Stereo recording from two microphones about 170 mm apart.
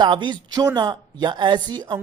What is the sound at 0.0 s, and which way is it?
A man's voice, 25° right (ahead or behind).